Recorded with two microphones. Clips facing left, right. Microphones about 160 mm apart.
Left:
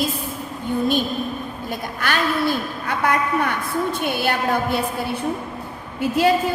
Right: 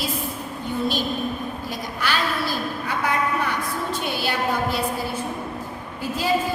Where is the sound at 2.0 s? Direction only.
55° left (ahead or behind).